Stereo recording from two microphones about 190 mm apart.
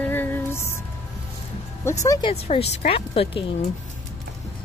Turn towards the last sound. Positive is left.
turn(degrees=30)  # may be behind; listen again after turning